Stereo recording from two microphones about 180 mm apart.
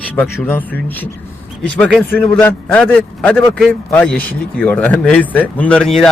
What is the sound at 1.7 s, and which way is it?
Speech, 5° left (ahead or behind).